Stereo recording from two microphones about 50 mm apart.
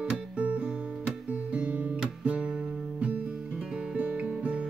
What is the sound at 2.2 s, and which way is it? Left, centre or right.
Music, right.